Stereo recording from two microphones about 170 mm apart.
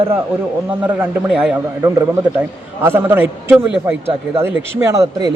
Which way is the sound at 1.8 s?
20° right (ahead or behind).